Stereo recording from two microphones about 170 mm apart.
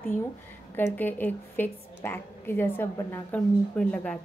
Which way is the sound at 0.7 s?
10° left (ahead or behind).